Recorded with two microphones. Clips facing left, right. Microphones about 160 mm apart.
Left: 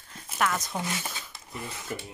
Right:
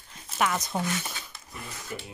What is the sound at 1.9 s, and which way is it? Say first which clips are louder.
Speech: left 2 dB; 45° left (ahead or behind).